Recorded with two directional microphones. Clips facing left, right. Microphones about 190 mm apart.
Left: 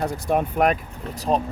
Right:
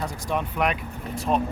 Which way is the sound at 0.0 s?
50° left (ahead or behind).